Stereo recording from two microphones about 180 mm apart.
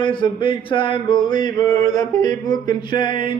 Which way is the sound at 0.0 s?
25° left (ahead or behind).